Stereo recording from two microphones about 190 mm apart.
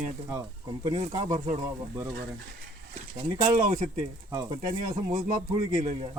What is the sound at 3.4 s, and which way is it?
Speech, 45° right (ahead or behind).